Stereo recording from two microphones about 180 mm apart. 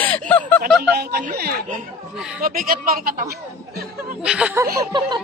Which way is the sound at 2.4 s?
55° right (ahead or behind).